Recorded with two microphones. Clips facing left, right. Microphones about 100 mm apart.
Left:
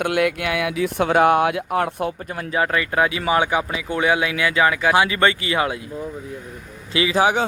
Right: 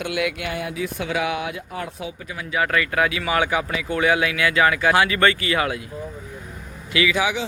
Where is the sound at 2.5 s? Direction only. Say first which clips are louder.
Left 1 dB; 25° left (ahead or behind).